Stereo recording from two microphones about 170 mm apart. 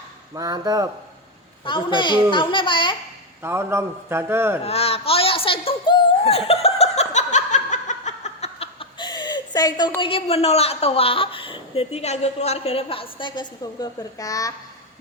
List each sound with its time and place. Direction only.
0.3 s speech: 20° right (ahead or behind)
1.6 s a woman's voice: 30° left (ahead or behind)
3.4 s a man's voice: 15° right (ahead or behind)
4.6 s a sound: 35° left (ahead or behind)
10.0 s a woman's voice: 35° left (ahead or behind)